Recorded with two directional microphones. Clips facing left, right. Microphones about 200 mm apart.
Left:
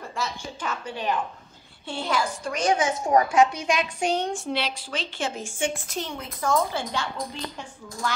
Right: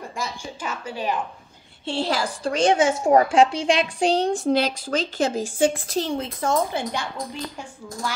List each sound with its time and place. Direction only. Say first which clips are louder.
0.2 s speech: even; 10° right (ahead or behind)
1.9 s a woman's voice: right 3 dB; 30° right (ahead or behind); by 7.1 s 15° right (ahead or behind)